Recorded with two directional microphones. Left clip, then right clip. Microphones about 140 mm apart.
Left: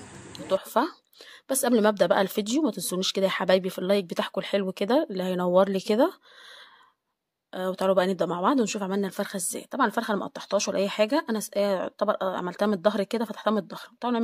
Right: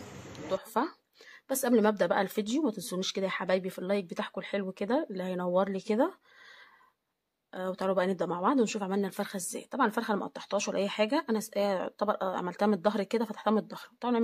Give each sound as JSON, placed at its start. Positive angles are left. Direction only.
{"t": 0.3, "sound": "speech", "side_deg": 35}
{"t": 7.5, "sound": "speech", "side_deg": 35}